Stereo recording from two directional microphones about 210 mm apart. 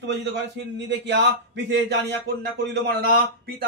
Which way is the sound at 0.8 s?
55° right (ahead or behind).